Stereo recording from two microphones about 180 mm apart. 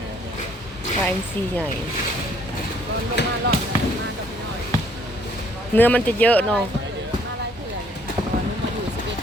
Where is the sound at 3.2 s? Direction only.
65° left (ahead or behind).